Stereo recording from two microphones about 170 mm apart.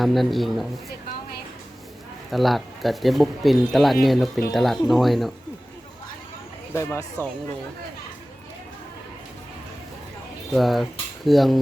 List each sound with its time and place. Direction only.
0.0 s speech: centre (ahead or behind)
2.3 s speech: centre (ahead or behind)
6.7 s speech: 15° left (ahead or behind)
10.5 s speech: centre (ahead or behind)